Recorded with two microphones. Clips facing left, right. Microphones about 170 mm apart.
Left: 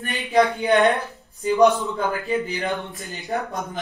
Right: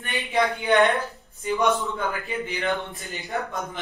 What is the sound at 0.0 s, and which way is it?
A man's voice, 40° left (ahead or behind).